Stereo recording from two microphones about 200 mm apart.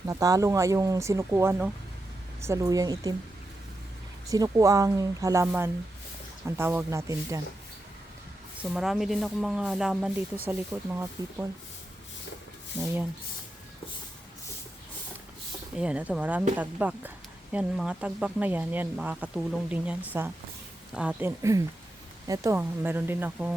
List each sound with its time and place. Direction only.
0.0 s speech: 15° right (ahead or behind)
4.3 s speech: 15° right (ahead or behind)
8.7 s speech: centre (ahead or behind)
12.8 s speech: 10° right (ahead or behind)
15.8 s speech: 5° right (ahead or behind)